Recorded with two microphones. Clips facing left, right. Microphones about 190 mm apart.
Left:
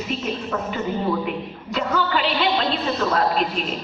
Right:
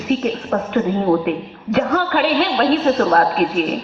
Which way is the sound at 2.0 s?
55° right (ahead or behind).